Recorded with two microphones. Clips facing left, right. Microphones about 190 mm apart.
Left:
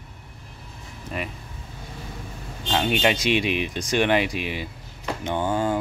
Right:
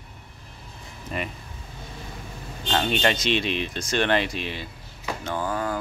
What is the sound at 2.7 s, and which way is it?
Speech, 5° left (ahead or behind).